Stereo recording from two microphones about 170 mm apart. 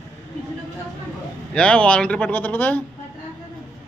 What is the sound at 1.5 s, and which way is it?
Speech, 5° left (ahead or behind).